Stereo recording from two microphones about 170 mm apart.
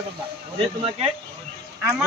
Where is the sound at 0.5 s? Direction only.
35° right (ahead or behind).